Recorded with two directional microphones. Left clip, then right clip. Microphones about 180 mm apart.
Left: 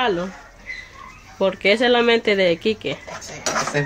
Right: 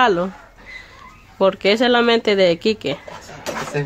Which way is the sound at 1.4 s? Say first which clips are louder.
Right 2 dB; 25° right (ahead or behind).